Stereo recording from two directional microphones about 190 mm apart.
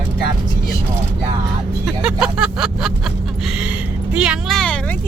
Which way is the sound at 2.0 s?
5° right (ahead or behind).